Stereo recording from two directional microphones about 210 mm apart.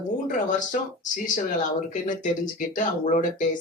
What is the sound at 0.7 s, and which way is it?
Speech, 35° left (ahead or behind).